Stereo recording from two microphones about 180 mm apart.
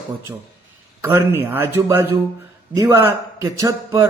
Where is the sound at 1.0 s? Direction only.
10° right (ahead or behind).